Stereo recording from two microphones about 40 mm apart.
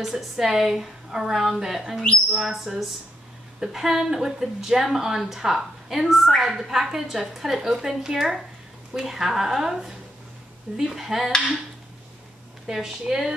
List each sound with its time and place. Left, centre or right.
0.0 s a woman's voice: centre
2.3 s a sound: centre
3.5 s a woman's voice: centre
12.6 s a woman's voice: centre